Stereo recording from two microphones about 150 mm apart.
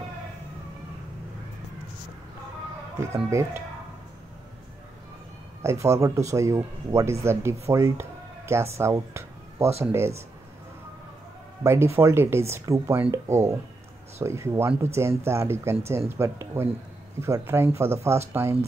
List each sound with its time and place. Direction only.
3.3 s speech: 20° right (ahead or behind)
5.6 s speech: 20° right (ahead or behind)
11.6 s speech: 15° right (ahead or behind)